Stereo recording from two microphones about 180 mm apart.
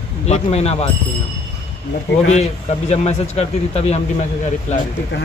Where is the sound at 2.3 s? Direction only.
35° left (ahead or behind).